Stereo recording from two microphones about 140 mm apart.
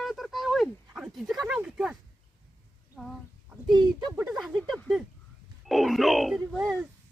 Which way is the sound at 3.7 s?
30° right (ahead or behind).